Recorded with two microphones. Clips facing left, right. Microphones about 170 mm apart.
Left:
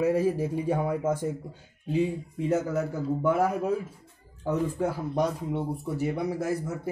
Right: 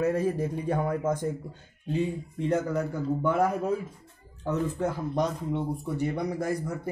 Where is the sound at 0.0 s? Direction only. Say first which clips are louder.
Left 2 dB; 10° left (ahead or behind).